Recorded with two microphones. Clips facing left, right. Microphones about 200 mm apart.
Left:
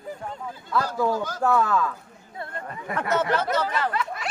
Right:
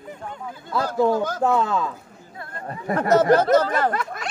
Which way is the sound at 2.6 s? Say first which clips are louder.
Right 8 dB; 35° right (ahead or behind).